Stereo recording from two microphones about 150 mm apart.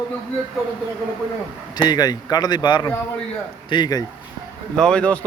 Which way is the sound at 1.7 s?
25° left (ahead or behind).